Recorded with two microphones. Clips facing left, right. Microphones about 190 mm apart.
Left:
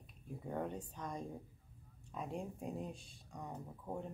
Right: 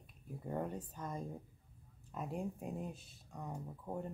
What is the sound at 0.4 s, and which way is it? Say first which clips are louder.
Speech: right 1 dB; 5° right (ahead or behind).